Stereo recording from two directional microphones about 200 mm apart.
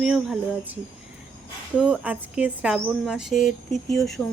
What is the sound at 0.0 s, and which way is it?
Speech, 5° right (ahead or behind).